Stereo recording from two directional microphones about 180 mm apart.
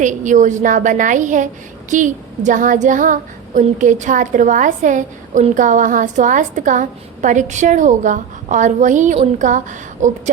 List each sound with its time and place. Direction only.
0.0 s child singing: 45° right (ahead or behind)
10.0 s speech: 40° right (ahead or behind)